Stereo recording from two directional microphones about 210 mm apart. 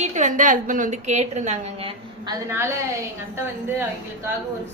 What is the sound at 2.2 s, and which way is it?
A woman's voice, 15° right (ahead or behind).